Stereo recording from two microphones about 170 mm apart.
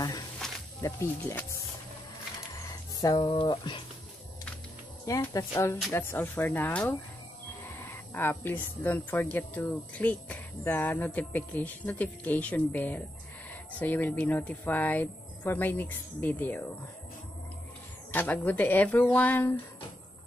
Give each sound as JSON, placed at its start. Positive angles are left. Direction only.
{"t": 0.7, "sound": "speech", "side_deg": 20}
{"t": 3.0, "sound": "speech", "side_deg": 25}
{"t": 5.0, "sound": "speech", "side_deg": 20}
{"t": 18.1, "sound": "speech", "side_deg": 10}